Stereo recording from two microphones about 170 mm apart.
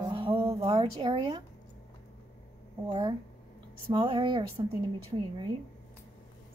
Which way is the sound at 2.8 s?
25° right (ahead or behind).